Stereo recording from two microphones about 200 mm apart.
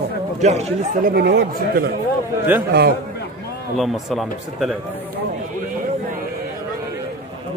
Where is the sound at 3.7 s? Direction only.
Centre (ahead or behind).